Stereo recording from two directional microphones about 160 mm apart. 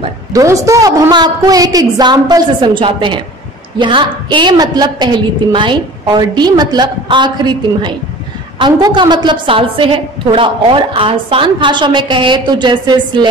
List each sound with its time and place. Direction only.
0.3 s a woman's voice: 20° right (ahead or behind)